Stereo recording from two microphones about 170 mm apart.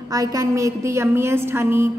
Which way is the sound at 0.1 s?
20° right (ahead or behind).